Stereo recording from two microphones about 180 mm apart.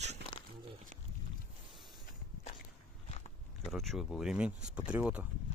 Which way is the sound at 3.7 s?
Centre (ahead or behind).